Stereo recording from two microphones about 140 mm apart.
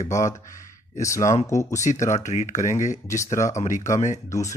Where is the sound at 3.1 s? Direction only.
20° left (ahead or behind).